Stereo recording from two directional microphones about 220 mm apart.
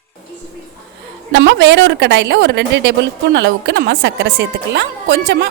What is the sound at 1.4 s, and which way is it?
A woman's voice, 55° right (ahead or behind).